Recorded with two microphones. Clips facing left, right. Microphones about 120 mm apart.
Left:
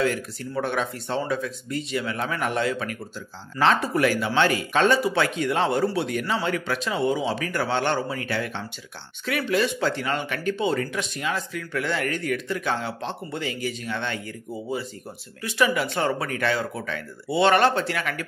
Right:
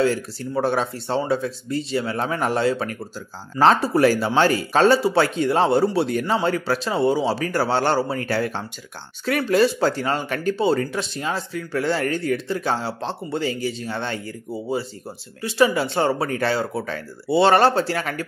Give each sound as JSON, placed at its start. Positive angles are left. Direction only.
{"t": 0.0, "sound": "speech", "side_deg": -30}